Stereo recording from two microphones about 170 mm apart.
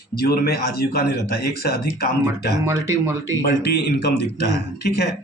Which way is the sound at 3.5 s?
70° left (ahead or behind).